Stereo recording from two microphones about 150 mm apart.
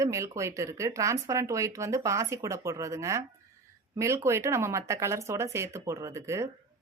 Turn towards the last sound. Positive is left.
turn(degrees=-20)  # may be behind; listen again after turning